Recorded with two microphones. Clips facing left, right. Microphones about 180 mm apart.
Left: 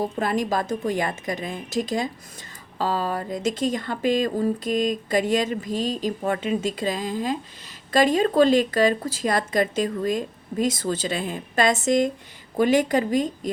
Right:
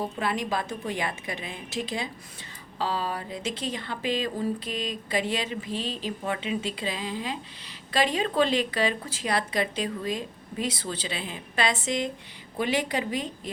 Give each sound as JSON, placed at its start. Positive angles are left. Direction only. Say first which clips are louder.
{"t": 0.0, "sound": "speech", "louder": "left 5 dB", "side_deg": 45}